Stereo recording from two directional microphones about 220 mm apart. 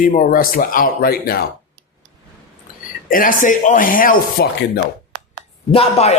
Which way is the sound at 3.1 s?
40° left (ahead or behind).